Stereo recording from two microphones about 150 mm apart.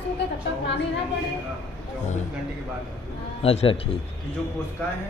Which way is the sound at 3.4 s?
40° left (ahead or behind).